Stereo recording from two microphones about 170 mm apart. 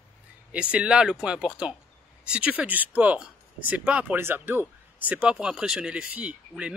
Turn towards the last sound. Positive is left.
turn(degrees=-5)  # may be behind; listen again after turning